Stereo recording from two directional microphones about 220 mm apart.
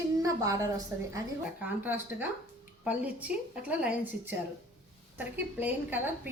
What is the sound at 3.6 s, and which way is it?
A woman's voice, 5° right (ahead or behind).